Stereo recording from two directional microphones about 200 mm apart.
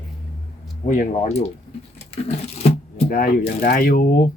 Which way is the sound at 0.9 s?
40° left (ahead or behind).